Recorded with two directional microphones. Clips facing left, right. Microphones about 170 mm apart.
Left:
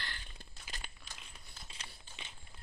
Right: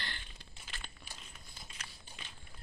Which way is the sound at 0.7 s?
40° left (ahead or behind).